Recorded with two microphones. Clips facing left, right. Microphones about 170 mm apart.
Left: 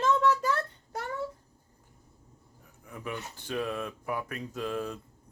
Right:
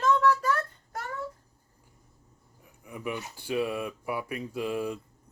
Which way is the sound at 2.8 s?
10° right (ahead or behind).